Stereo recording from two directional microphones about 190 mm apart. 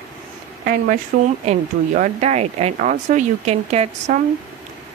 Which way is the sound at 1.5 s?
35° right (ahead or behind).